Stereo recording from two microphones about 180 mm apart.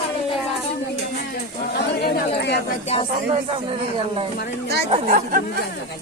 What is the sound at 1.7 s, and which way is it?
Speech, 60° left (ahead or behind).